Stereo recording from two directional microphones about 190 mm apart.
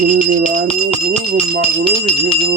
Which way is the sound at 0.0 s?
45° right (ahead or behind).